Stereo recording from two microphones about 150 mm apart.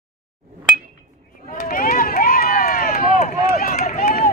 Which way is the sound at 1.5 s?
70° left (ahead or behind).